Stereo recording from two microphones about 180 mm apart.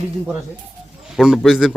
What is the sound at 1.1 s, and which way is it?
Speech, centre (ahead or behind).